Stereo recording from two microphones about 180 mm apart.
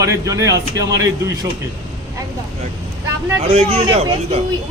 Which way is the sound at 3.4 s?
35° right (ahead or behind).